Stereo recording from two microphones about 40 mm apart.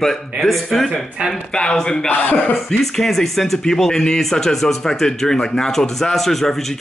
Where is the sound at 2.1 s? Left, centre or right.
Left.